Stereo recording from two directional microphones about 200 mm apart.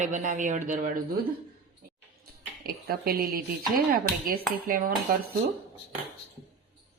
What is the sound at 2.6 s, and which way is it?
Speech, 50° right (ahead or behind).